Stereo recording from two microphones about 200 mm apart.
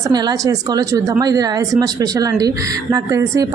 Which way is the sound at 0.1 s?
20° right (ahead or behind).